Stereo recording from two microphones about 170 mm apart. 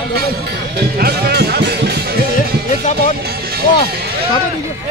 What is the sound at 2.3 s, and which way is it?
Music, 45° left (ahead or behind).